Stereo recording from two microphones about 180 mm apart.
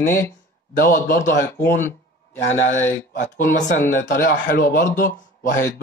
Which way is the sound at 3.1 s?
45° left (ahead or behind).